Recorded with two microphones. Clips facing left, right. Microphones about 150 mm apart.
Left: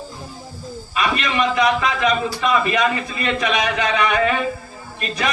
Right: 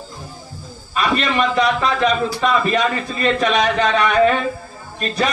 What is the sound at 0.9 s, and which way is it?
A man's voice, 40° right (ahead or behind).